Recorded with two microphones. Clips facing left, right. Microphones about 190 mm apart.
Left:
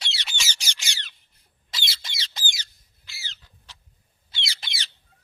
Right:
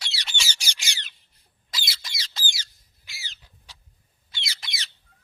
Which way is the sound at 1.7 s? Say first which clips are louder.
Even; 25° left (ahead or behind).